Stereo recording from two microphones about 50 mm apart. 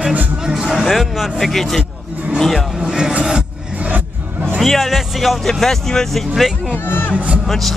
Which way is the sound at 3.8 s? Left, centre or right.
Right.